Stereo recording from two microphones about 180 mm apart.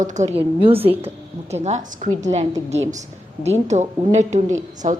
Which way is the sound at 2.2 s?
40° right (ahead or behind).